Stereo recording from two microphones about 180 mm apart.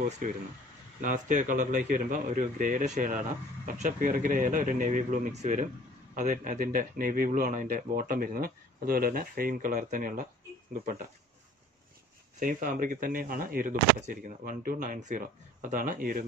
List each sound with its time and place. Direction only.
1.0 s speech: 45° right (ahead or behind)
12.4 s speech: 50° right (ahead or behind)